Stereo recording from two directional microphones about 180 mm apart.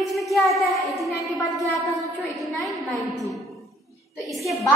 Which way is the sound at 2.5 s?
Centre (ahead or behind).